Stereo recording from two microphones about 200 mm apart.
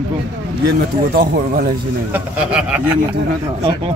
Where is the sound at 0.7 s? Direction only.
50° right (ahead or behind).